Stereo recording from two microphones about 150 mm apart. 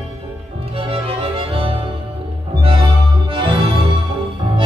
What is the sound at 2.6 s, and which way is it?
Music, 35° right (ahead or behind).